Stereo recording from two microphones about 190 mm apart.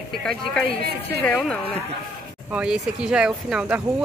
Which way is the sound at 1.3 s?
Centre (ahead or behind).